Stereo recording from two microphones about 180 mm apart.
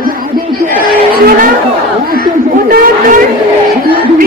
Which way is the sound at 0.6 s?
55° right (ahead or behind).